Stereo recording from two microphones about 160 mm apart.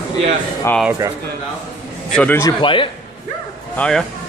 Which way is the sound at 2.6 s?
30° left (ahead or behind).